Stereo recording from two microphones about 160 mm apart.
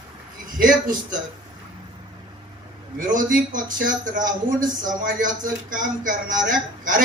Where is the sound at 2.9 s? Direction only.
55° right (ahead or behind).